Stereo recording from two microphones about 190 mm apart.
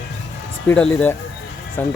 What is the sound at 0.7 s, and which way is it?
Speech, 5° left (ahead or behind).